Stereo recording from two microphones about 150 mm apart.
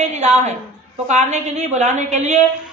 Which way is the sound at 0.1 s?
50° right (ahead or behind).